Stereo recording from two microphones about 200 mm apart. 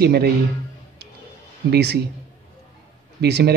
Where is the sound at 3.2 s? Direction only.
55° right (ahead or behind).